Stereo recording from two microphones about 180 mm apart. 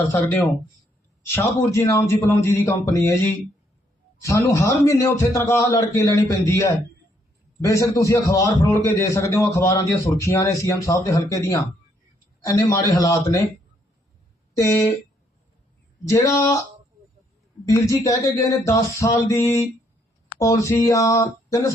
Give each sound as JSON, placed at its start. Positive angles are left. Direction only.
{"t": 0.1, "sound": "a man's voice", "side_deg": 10}
{"t": 4.2, "sound": "a man's voice", "side_deg": 15}
{"t": 7.6, "sound": "a man's voice", "side_deg": 15}
{"t": 14.6, "sound": "a man's voice", "side_deg": 15}
{"t": 16.0, "sound": "a man's voice", "side_deg": 15}
{"t": 17.7, "sound": "a man's voice", "side_deg": 15}